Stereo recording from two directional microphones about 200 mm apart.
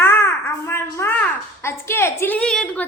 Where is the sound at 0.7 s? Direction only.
10° left (ahead or behind).